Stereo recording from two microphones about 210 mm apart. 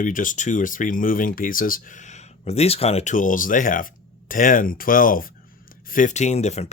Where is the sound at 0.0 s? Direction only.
40° left (ahead or behind).